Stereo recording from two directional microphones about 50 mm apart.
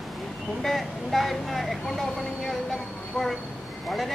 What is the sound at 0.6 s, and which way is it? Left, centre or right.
Speech, centre.